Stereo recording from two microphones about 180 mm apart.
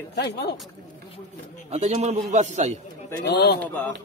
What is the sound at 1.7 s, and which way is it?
A man's voice, 40° right (ahead or behind).